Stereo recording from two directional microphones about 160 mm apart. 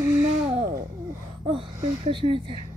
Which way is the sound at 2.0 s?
35° right (ahead or behind).